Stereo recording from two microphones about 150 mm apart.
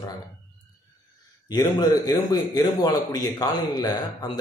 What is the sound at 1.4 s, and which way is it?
A man's voice, 25° left (ahead or behind).